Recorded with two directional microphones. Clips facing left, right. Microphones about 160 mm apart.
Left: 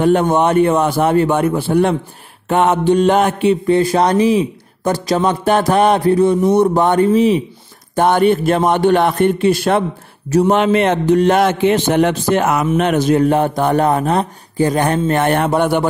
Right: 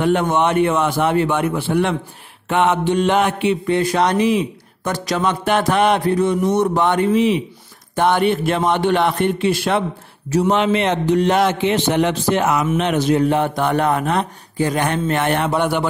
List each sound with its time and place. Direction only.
0.0 s mantra: 40° left (ahead or behind)
7.9 s speech: 45° left (ahead or behind)